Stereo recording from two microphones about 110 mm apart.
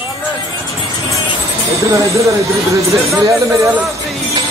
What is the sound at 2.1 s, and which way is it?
Speech, 30° right (ahead or behind).